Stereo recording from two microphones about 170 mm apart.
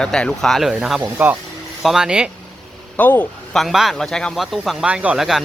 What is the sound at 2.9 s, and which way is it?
Speech, 10° left (ahead or behind).